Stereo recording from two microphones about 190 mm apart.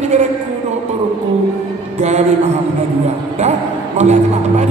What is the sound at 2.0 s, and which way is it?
Speech, 35° right (ahead or behind).